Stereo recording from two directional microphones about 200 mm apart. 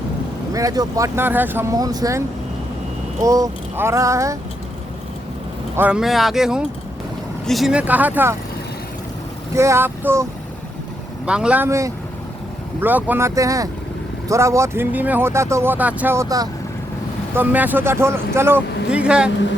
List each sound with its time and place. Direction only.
0.5 s speech: 20° right (ahead or behind)
3.2 s speech: 15° right (ahead or behind)
5.7 s speech: 5° right (ahead or behind)
9.6 s speech: 15° right (ahead or behind)
11.3 s speech: 5° right (ahead or behind)